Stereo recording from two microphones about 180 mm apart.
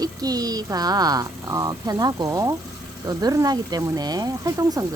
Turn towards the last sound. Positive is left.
turn(degrees=-20)  # may be behind; listen again after turning